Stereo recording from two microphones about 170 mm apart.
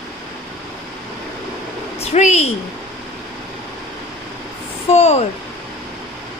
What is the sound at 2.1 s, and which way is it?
Speech, 40° left (ahead or behind).